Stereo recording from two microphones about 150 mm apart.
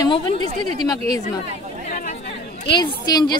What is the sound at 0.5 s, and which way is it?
Speech, 45° right (ahead or behind).